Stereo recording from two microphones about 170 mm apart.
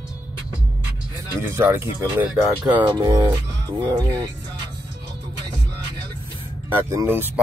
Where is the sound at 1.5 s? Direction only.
15° right (ahead or behind).